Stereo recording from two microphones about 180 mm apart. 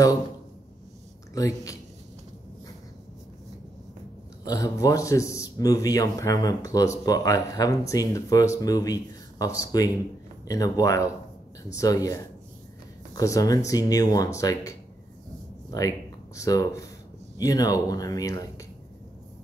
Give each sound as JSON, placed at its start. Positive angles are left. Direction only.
{"t": 1.3, "sound": "a man's voice", "side_deg": 20}
{"t": 4.5, "sound": "a man's voice", "side_deg": 20}
{"t": 16.3, "sound": "a man's voice", "side_deg": 20}